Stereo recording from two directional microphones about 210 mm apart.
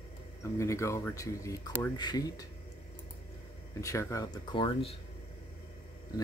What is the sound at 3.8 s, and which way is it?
Speech, 15° left (ahead or behind).